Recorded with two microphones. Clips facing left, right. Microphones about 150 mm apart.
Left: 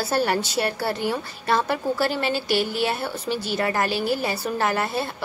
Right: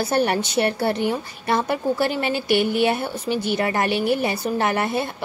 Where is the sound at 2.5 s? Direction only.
60° right (ahead or behind).